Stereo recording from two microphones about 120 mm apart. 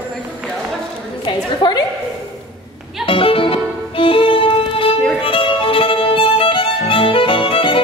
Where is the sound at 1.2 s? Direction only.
40° left (ahead or behind).